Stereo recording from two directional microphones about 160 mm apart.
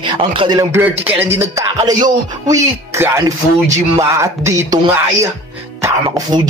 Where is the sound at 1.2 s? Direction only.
15° right (ahead or behind).